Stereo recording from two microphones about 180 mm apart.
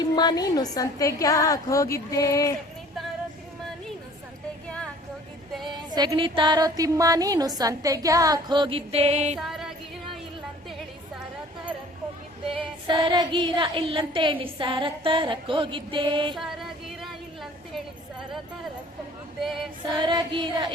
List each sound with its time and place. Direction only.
0.2 s a woman's voice: 20° left (ahead or behind)
5.9 s female singing: 25° right (ahead or behind)
9.4 s music: centre (ahead or behind)
12.5 s female singing: 30° right (ahead or behind)
16.3 s a sound: centre (ahead or behind)
20.0 s female singing: 25° right (ahead or behind)